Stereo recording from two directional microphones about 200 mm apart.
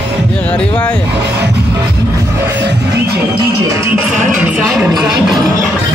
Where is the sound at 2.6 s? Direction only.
55° right (ahead or behind).